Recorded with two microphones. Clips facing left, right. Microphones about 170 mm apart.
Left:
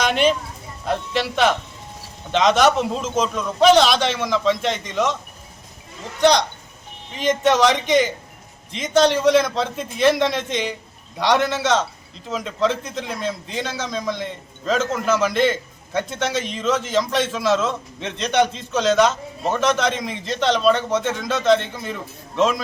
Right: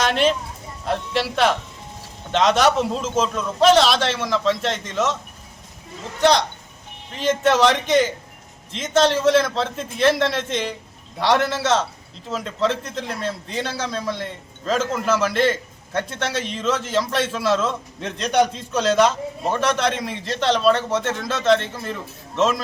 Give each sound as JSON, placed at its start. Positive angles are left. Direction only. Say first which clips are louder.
{"t": 0.0, "sound": "a man's voice", "louder": "left 1 dB", "side_deg": 0}
{"t": 6.1, "sound": "a man's voice", "louder": "left 1 dB", "side_deg": -5}
{"t": 20.9, "sound": "speech", "louder": "left 1 dB", "side_deg": 10}
{"t": 21.4, "sound": "a man's voice", "louder": "even", "side_deg": 0}